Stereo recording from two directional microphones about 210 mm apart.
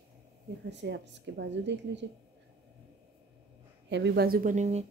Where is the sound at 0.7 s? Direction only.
55° right (ahead or behind).